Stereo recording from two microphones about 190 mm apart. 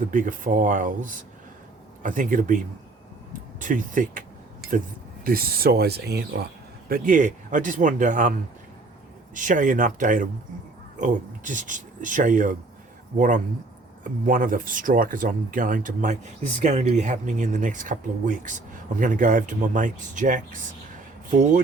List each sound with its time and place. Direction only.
0.1 s speech: 45° right (ahead or behind)
3.6 s speech: 40° right (ahead or behind)
5.2 s speech: 50° right (ahead or behind)
9.3 s speech: 45° right (ahead or behind)